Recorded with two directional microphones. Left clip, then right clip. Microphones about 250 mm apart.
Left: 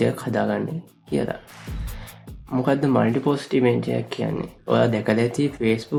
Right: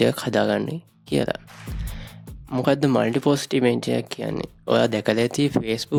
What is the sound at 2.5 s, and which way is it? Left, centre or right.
Speech, right.